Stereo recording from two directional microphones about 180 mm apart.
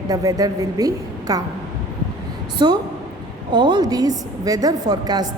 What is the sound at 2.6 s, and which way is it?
A woman's voice, 25° right (ahead or behind).